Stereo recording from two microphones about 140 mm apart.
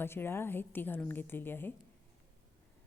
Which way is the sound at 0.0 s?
15° left (ahead or behind).